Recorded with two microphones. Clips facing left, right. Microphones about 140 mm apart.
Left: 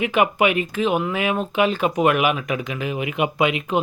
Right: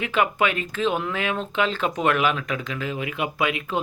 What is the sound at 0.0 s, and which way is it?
Speech, 15° left (ahead or behind).